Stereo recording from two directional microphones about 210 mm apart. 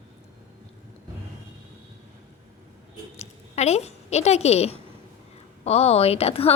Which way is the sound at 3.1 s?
30° left (ahead or behind).